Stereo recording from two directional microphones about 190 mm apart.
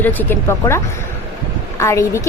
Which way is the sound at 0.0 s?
10° left (ahead or behind).